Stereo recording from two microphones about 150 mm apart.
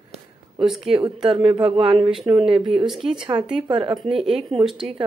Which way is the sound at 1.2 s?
35° right (ahead or behind).